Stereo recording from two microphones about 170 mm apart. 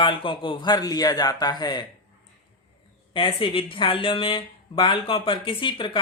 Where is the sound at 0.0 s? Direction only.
30° left (ahead or behind).